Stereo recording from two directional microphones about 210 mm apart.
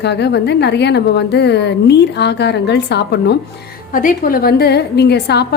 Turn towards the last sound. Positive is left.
turn(degrees=50)  # may be behind; listen again after turning